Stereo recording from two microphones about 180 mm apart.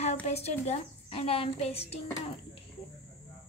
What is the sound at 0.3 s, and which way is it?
A woman's voice, 35° left (ahead or behind).